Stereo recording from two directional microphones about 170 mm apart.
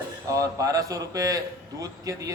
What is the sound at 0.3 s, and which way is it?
A man's voice, 20° right (ahead or behind).